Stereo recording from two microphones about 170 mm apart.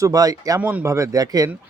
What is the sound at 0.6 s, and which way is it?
Speech, 10° right (ahead or behind).